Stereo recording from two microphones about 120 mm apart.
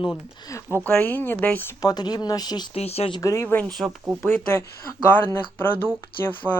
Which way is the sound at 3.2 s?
25° left (ahead or behind).